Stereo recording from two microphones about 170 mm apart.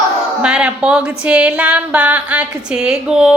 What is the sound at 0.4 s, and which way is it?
Speech, 5° right (ahead or behind).